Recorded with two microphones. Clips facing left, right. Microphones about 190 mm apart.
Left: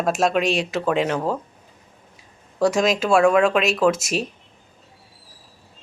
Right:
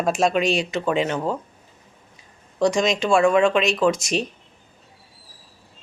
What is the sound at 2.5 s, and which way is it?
A woman's voice, 5° left (ahead or behind).